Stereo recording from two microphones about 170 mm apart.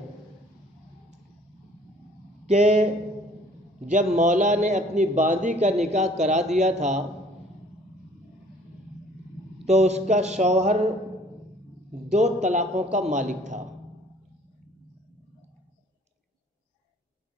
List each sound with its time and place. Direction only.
2.4 s a man's voice: 40° right (ahead or behind)
9.7 s a sound: 40° right (ahead or behind)
12.1 s a man's voice: 40° right (ahead or behind)